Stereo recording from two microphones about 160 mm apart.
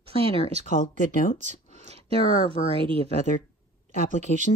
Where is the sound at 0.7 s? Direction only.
60° left (ahead or behind).